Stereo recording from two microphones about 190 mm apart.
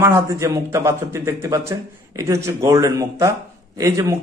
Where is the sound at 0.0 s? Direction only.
15° right (ahead or behind).